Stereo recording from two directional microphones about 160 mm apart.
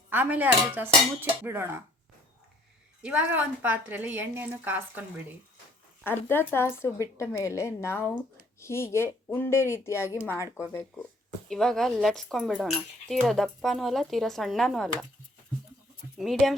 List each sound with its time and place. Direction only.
0.1 s a woman's voice: 10° right (ahead or behind)
3.0 s a woman's voice: 10° right (ahead or behind)
6.1 s a woman's voice: 15° left (ahead or behind)
10.9 s speech: centre (ahead or behind)
16.1 s speech: centre (ahead or behind)